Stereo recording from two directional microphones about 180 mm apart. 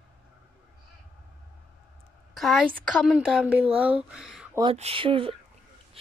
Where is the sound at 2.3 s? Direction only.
Centre (ahead or behind).